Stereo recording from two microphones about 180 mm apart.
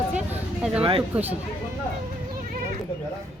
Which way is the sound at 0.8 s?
30° right (ahead or behind).